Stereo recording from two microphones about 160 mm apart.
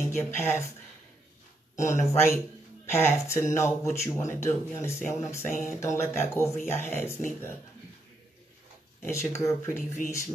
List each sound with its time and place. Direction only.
0.0 s speech: 15° left (ahead or behind)
1.9 s speech: 20° left (ahead or behind)
9.1 s speech: 20° left (ahead or behind)